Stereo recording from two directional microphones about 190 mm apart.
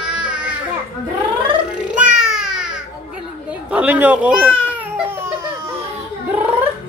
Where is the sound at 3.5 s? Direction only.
5° right (ahead or behind).